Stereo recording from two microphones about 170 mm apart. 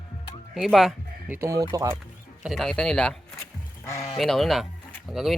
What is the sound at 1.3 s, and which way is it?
Speech, 15° right (ahead or behind).